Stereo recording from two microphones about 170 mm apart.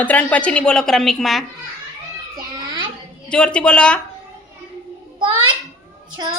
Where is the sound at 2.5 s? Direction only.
30° right (ahead or behind).